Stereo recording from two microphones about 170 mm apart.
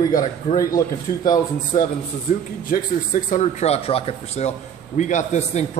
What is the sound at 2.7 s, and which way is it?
Speech, 55° left (ahead or behind).